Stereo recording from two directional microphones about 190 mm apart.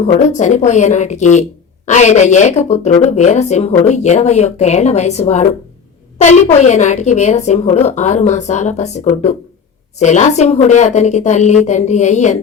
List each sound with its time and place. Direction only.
0.2 s speech: 40° left (ahead or behind)